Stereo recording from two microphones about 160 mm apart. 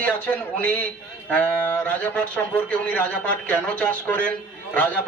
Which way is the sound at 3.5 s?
10° left (ahead or behind).